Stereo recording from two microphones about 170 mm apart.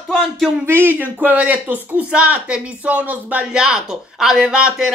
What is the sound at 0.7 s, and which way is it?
Speech, 15° right (ahead or behind).